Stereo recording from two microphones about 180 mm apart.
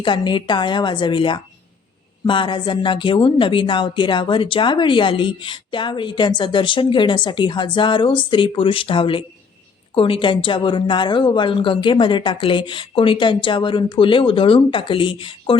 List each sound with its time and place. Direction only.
0.0 s a woman's voice: 25° left (ahead or behind)